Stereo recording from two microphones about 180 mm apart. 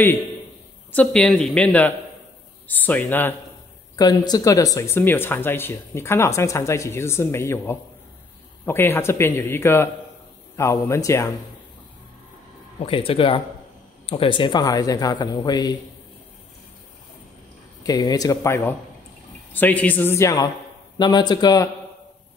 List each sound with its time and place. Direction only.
0.9 s speech: 5° left (ahead or behind)
3.9 s speech: 20° left (ahead or behind)
12.7 s a man's voice: 30° left (ahead or behind)
17.8 s a man's voice: 20° left (ahead or behind)